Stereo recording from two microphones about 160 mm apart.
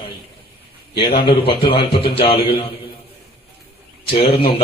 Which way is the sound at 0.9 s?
35° left (ahead or behind).